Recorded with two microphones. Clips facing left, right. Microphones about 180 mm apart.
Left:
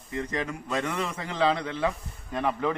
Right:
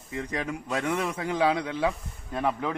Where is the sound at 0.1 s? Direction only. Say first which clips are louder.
Left 1 dB; 10° right (ahead or behind).